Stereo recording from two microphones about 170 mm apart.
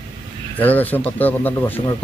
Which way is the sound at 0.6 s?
10° left (ahead or behind).